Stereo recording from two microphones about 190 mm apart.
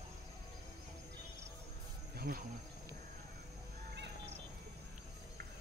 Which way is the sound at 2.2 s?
50° right (ahead or behind).